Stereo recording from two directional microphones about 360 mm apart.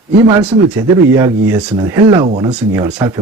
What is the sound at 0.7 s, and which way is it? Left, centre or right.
Speech, centre.